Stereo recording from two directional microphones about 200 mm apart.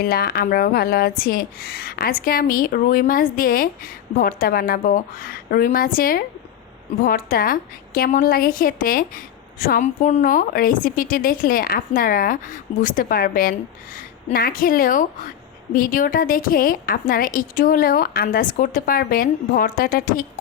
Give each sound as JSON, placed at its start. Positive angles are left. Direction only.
{"t": 0.0, "sound": "a woman's voice", "side_deg": 50}